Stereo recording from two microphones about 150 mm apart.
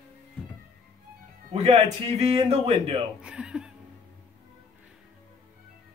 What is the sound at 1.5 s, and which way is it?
Speech, 45° right (ahead or behind).